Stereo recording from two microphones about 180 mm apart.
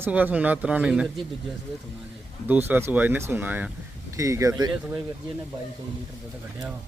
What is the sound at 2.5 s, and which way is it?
Speech, 10° right (ahead or behind).